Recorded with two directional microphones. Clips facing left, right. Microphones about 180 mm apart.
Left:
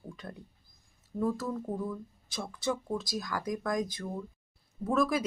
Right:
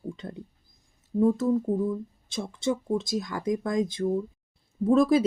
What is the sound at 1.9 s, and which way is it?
Speech, 25° right (ahead or behind).